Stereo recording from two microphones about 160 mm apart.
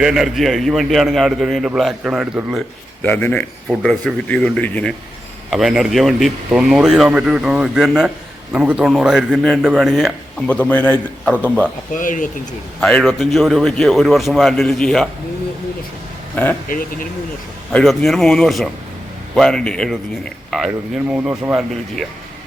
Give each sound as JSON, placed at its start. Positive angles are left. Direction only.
{"t": 0.0, "sound": "a man's voice", "side_deg": 0}
{"t": 3.0, "sound": "a man's voice", "side_deg": 10}
{"t": 11.9, "sound": "speech", "side_deg": 55}
{"t": 12.8, "sound": "a man's voice", "side_deg": 0}
{"t": 16.3, "sound": "speech", "side_deg": 10}
{"t": 16.6, "sound": "speech", "side_deg": 60}
{"t": 17.7, "sound": "a man's voice", "side_deg": 0}